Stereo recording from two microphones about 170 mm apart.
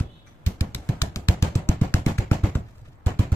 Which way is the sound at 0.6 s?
15° left (ahead or behind).